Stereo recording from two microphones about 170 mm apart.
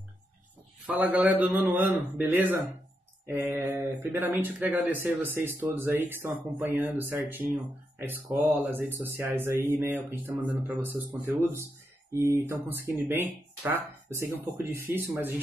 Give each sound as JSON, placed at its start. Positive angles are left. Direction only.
{"t": 0.8, "sound": "speech", "side_deg": -10}